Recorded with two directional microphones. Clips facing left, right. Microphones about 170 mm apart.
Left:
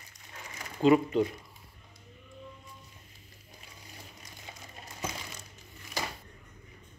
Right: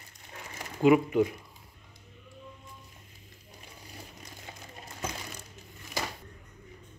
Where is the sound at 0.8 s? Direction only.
10° right (ahead or behind).